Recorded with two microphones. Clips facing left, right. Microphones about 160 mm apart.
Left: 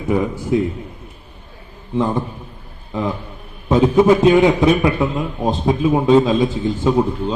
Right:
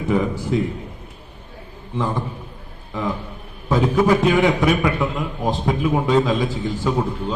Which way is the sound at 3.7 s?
20° left (ahead or behind).